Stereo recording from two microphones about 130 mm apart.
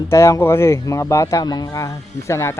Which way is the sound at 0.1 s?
20° left (ahead or behind).